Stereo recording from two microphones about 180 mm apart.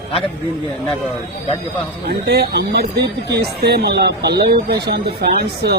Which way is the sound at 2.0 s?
65° right (ahead or behind).